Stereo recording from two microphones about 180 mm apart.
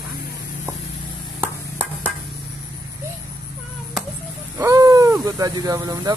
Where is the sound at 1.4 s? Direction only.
10° right (ahead or behind).